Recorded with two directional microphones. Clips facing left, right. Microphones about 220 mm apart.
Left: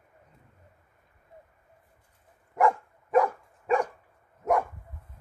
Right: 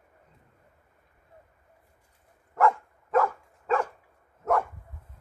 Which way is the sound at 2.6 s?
15° left (ahead or behind).